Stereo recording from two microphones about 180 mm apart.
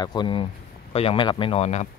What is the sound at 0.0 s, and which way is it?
Speech, 25° left (ahead or behind).